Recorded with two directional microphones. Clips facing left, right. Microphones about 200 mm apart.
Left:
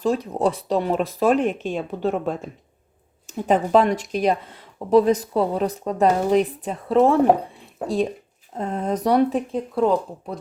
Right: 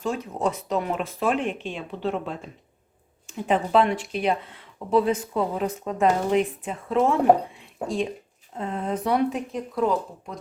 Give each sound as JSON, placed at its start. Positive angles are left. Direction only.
{"t": 0.0, "sound": "speech", "side_deg": 35}
{"t": 8.5, "sound": "speech", "side_deg": 40}